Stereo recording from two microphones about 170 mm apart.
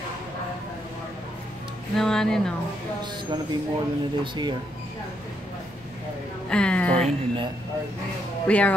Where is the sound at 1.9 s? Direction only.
5° left (ahead or behind).